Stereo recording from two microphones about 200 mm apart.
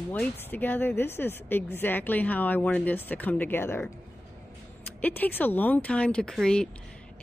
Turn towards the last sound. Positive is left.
turn(degrees=5)  # may be behind; listen again after turning